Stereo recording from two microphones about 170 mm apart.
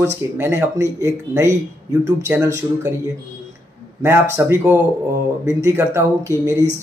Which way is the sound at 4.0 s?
15° right (ahead or behind).